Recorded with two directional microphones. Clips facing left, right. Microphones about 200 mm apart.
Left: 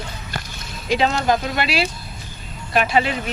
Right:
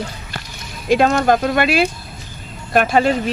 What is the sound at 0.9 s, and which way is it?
Speech, 50° right (ahead or behind).